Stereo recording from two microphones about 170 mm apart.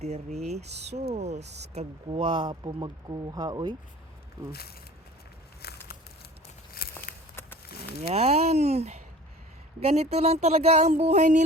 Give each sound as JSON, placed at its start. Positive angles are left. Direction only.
{"t": 0.0, "sound": "speech", "side_deg": -40}
{"t": 5.6, "sound": "a sound", "side_deg": 70}
{"t": 7.7, "sound": "speech", "side_deg": 70}
{"t": 8.1, "sound": "speech", "side_deg": -40}